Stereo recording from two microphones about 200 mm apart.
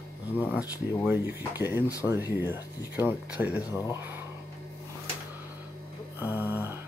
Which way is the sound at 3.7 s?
15° left (ahead or behind).